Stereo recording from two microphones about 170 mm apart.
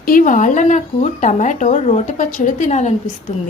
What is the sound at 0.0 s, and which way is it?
A woman's voice, 55° left (ahead or behind).